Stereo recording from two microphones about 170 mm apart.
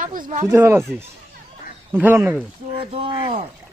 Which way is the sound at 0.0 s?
50° right (ahead or behind).